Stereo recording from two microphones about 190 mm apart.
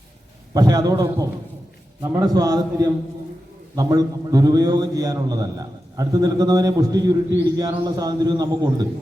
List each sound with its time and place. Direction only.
0.5 s a man's voice: 20° right (ahead or behind)